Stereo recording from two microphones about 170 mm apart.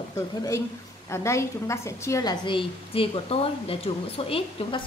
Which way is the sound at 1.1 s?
15° left (ahead or behind).